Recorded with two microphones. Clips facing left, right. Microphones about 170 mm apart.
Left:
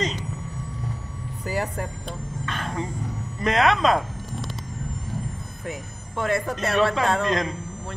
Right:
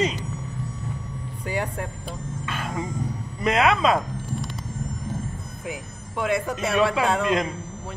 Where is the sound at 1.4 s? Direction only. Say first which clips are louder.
Left 1 dB; centre (ahead or behind).